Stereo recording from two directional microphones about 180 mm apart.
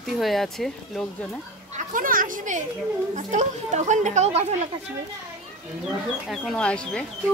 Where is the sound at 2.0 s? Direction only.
50° right (ahead or behind).